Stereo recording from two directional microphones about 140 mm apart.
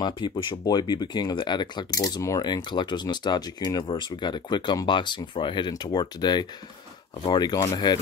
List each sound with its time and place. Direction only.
0.0 s speech: 30° left (ahead or behind)